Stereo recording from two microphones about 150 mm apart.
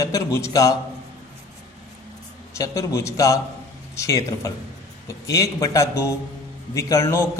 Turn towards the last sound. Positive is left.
turn(degrees=20)  # may be behind; listen again after turning